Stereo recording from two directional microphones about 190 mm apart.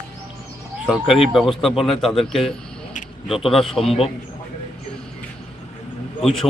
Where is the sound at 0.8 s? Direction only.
Centre (ahead or behind).